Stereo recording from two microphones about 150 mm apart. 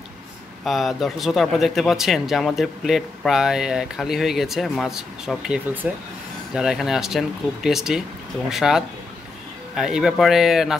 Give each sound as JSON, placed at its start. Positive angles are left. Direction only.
{"t": 0.7, "sound": "speech", "side_deg": 0}